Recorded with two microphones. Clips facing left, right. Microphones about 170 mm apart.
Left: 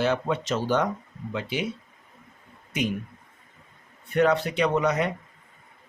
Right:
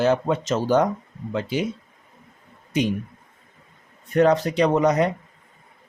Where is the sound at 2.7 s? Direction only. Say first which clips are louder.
Right 5 dB; 35° right (ahead or behind).